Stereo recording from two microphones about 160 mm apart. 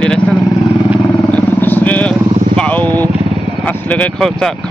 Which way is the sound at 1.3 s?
10° left (ahead or behind).